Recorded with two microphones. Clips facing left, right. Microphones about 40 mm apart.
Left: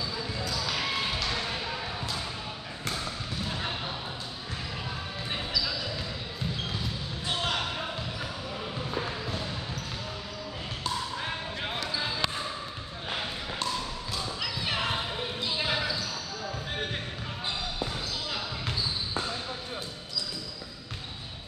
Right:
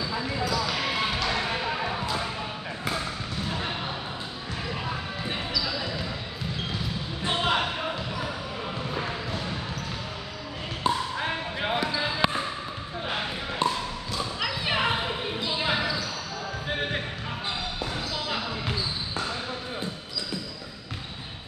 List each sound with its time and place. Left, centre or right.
0.1 s basketball bounce: right
0.5 s basketball bounce: centre; by 2.0 s right
3.4 s basketball bounce: centre
5.6 s basketball bounce: centre
7.2 s music: right
10.8 s basketball bounce: right
13.1 s a sound: right
14.4 s thump: right
15.4 s basketball bounce: centre